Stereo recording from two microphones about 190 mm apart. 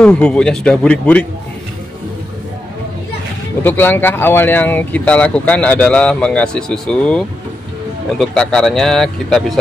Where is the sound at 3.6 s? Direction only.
10° left (ahead or behind).